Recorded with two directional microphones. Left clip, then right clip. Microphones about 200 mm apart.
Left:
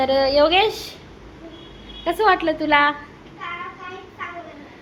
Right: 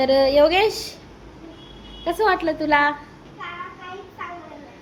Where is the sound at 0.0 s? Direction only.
30° right (ahead or behind).